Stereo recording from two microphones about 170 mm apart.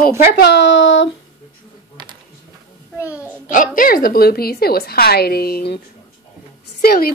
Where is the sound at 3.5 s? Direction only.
55° left (ahead or behind).